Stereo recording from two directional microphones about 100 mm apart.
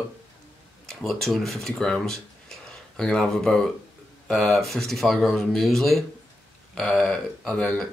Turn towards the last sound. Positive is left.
turn(degrees=5)  # may be behind; listen again after turning